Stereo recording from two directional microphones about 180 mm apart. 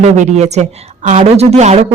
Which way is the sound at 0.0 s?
40° right (ahead or behind).